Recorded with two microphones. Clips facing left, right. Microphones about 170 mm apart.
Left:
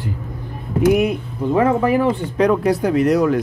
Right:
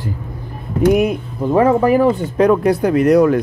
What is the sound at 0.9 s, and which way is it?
Speech, 45° right (ahead or behind).